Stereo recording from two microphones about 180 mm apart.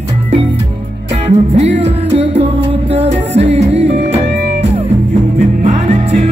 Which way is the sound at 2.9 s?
35° right (ahead or behind).